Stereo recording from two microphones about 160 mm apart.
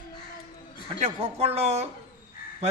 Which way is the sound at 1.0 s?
40° right (ahead or behind).